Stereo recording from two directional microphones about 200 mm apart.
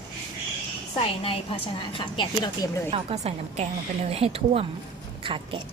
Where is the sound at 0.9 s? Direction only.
25° left (ahead or behind).